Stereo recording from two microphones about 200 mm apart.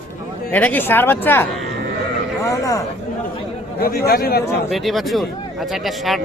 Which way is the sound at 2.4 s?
15° left (ahead or behind).